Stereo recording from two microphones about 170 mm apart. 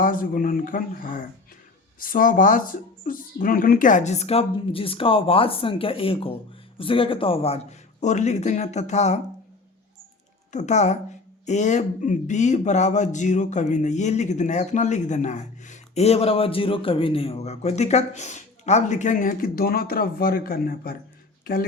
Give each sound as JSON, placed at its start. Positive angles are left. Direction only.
{"t": 0.0, "sound": "speech", "side_deg": 55}
{"t": 10.5, "sound": "speech", "side_deg": 45}